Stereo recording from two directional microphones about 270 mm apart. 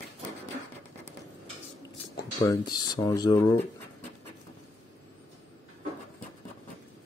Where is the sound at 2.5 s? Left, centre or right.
Centre.